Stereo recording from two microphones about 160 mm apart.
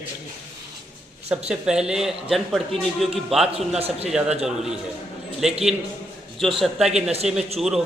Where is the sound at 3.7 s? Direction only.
40° right (ahead or behind).